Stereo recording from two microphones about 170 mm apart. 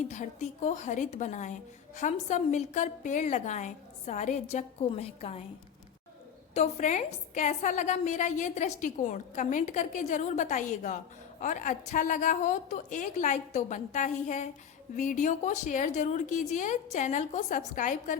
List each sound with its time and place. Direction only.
0.1 s a woman's voice: 45° left (ahead or behind)
6.5 s a woman's voice: 40° left (ahead or behind)